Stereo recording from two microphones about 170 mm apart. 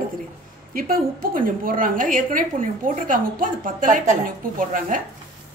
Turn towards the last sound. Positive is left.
turn(degrees=-50)  # may be behind; listen again after turning